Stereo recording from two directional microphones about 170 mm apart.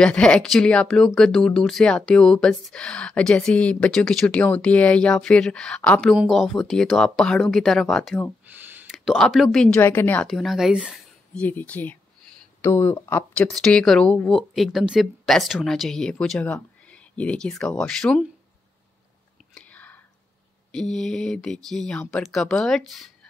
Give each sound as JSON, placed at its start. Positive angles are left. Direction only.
{"t": 0.0, "sound": "speech", "side_deg": 5}
{"t": 8.5, "sound": "speech", "side_deg": -10}
{"t": 11.4, "sound": "speech", "side_deg": 10}
{"t": 19.5, "sound": "whispering", "side_deg": 10}
{"t": 20.7, "sound": "speech", "side_deg": 5}